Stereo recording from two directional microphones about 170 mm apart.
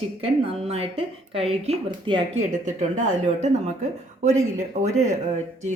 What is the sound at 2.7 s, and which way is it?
Speech, 45° right (ahead or behind).